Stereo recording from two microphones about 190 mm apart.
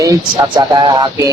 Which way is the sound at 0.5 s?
20° right (ahead or behind).